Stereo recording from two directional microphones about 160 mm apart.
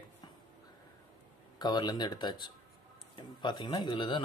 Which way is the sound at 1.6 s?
25° left (ahead or behind).